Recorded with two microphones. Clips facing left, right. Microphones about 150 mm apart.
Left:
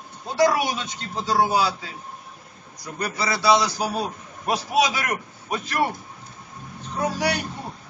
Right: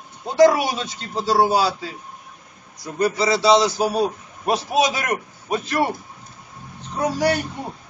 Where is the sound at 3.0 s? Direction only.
25° right (ahead or behind).